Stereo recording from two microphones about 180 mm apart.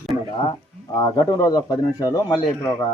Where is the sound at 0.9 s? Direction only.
20° left (ahead or behind).